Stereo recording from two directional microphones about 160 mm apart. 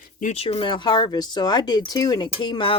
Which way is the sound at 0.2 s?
50° left (ahead or behind).